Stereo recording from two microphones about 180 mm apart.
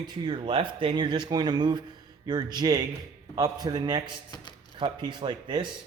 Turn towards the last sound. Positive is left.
turn(degrees=-25)  # may be behind; listen again after turning